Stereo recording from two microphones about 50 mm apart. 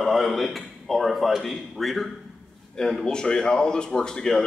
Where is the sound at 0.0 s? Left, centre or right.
Centre.